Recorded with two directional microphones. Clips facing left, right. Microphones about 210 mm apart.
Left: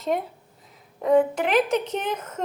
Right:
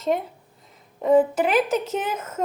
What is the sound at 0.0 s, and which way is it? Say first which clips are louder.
A woman's voice: right 2 dB; centre (ahead or behind).